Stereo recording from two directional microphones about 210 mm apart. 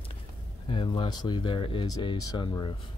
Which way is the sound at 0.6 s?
25° left (ahead or behind).